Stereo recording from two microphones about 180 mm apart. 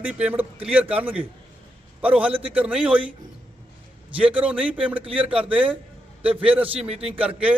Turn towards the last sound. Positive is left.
turn(degrees=-5)  # may be behind; listen again after turning